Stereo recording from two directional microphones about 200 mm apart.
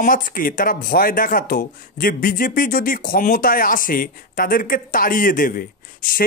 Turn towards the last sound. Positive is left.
turn(degrees=45)  # may be behind; listen again after turning